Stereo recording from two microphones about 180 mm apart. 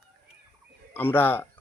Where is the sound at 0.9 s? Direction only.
10° left (ahead or behind).